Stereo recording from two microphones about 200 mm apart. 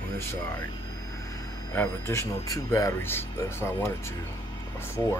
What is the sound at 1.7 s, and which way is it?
Speech, 10° left (ahead or behind).